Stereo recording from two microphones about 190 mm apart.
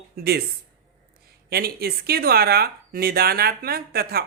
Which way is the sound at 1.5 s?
55° right (ahead or behind).